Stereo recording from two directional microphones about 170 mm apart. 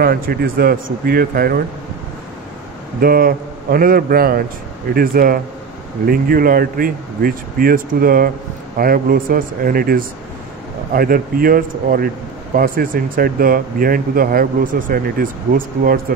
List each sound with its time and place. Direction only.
0.0 s speech: 65° right (ahead or behind)
3.0 s speech: 60° right (ahead or behind)